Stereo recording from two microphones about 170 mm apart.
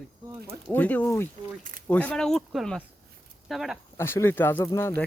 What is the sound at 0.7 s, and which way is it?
Speech, 10° left (ahead or behind).